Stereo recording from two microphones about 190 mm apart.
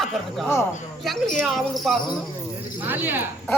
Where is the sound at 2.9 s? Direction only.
10° right (ahead or behind).